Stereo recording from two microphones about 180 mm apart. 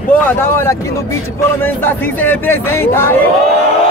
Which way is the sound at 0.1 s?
10° left (ahead or behind).